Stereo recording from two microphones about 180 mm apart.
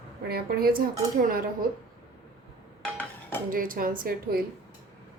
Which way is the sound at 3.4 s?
50° right (ahead or behind).